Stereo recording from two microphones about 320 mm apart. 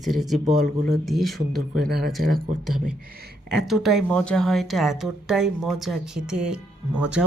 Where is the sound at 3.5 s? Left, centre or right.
Centre.